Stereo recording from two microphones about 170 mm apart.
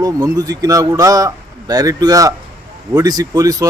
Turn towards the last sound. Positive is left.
turn(degrees=-20)  # may be behind; listen again after turning